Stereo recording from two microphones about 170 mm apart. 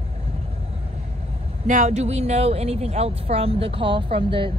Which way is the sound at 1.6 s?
45° right (ahead or behind).